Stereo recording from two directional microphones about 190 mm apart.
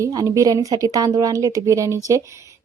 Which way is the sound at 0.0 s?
20° right (ahead or behind).